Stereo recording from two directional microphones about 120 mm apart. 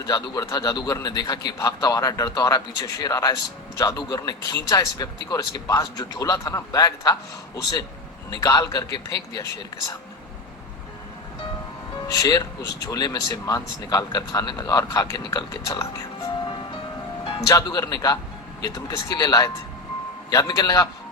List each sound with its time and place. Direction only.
0.1 s speech: 30° left (ahead or behind)
12.1 s speech: 30° left (ahead or behind)
17.5 s speech: 30° left (ahead or behind)